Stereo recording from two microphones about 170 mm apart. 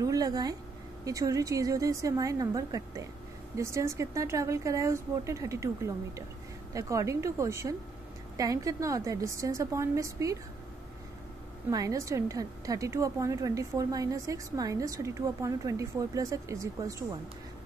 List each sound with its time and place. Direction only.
0.0 s a woman's voice: 20° right (ahead or behind)
11.7 s a woman's voice: 20° right (ahead or behind)